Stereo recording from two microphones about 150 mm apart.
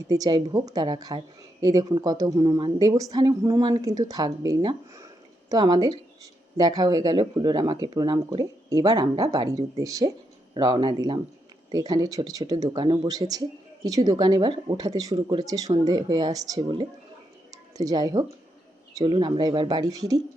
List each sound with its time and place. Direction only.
0.1 s speech: 25° right (ahead or behind)
17.5 s a sound: 25° right (ahead or behind)
18.9 s speech: 30° right (ahead or behind)